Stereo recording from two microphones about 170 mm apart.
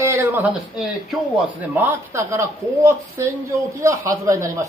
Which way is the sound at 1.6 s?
10° right (ahead or behind).